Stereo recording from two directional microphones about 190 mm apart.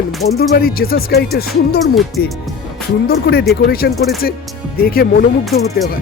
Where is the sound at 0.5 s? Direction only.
55° left (ahead or behind).